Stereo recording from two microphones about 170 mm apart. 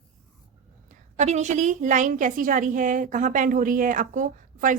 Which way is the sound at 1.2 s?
45° right (ahead or behind).